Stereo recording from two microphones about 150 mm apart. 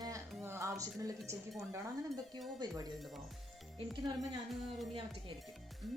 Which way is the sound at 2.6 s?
25° right (ahead or behind).